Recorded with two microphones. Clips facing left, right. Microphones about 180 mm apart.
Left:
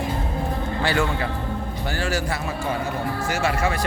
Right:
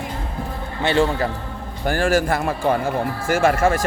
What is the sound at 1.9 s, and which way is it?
Speech, 50° right (ahead or behind).